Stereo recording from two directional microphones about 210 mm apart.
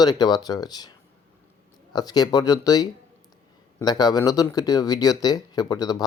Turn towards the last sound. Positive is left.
turn(degrees=15)  # may be behind; listen again after turning